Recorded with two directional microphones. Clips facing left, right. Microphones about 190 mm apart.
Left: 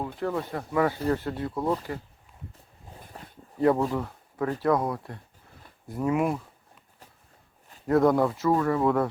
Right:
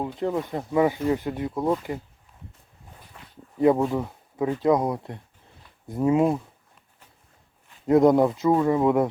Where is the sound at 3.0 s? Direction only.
40° left (ahead or behind).